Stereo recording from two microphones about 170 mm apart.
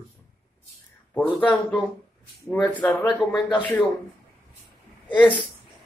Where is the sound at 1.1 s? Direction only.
5° left (ahead or behind).